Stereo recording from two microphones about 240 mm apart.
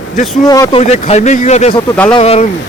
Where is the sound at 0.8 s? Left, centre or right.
Left.